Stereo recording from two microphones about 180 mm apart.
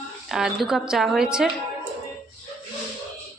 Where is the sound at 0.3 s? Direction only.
Centre (ahead or behind).